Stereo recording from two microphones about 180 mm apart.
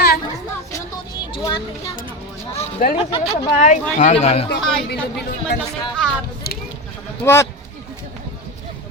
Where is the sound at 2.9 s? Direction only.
30° left (ahead or behind).